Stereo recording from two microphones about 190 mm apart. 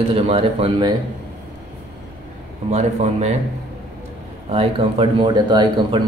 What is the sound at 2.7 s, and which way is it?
Speech, 35° right (ahead or behind).